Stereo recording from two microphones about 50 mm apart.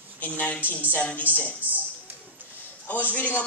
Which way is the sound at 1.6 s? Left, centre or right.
Right.